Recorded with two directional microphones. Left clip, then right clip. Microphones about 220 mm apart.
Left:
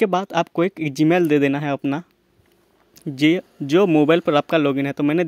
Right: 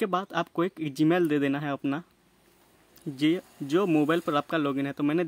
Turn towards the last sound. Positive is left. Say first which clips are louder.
# left 7 dB
turn(degrees=30)  # may be behind; listen again after turning